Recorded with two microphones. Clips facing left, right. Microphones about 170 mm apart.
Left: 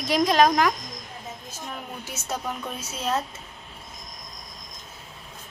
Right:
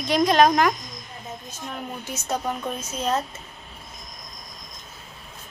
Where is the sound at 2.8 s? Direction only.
5° left (ahead or behind).